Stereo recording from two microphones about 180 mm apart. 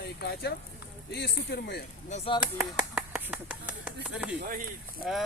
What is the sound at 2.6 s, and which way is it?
A man's voice, 5° right (ahead or behind).